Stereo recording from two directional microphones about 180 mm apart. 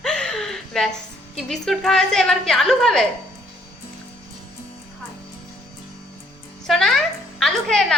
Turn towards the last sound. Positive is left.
turn(degrees=0)  # may be behind; listen again after turning